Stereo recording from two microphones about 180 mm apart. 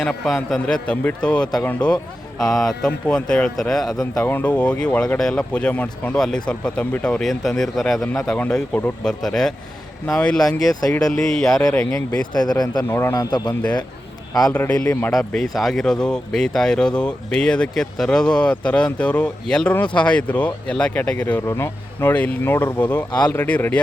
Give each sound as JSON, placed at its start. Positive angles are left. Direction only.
{"t": 0.0, "sound": "speech", "side_deg": 5}
{"t": 10.7, "sound": "a man's voice", "side_deg": 20}
{"t": 11.1, "sound": "speech", "side_deg": 0}
{"t": 12.3, "sound": "a man's voice", "side_deg": 20}